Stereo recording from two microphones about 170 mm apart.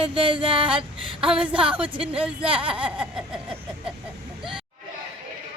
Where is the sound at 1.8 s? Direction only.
30° right (ahead or behind).